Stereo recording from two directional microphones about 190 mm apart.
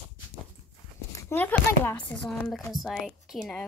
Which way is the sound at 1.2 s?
10° left (ahead or behind).